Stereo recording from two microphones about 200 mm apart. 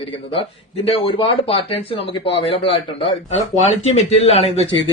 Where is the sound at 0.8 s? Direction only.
25° left (ahead or behind).